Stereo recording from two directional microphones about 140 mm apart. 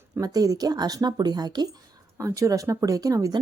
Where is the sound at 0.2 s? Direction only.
25° right (ahead or behind).